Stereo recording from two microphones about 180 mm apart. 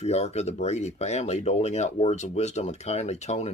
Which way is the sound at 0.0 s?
35° left (ahead or behind).